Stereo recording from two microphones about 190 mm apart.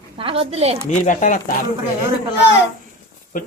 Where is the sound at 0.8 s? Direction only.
40° left (ahead or behind).